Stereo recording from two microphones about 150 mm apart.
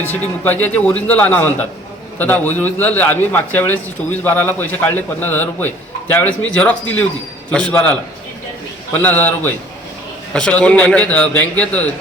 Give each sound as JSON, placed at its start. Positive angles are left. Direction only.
{"t": 0.4, "sound": "a man's voice", "side_deg": 10}